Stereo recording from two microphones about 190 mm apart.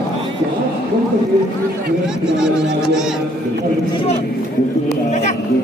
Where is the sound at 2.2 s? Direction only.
5° right (ahead or behind).